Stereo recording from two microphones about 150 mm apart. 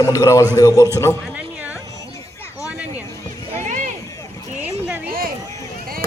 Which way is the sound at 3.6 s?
55° right (ahead or behind).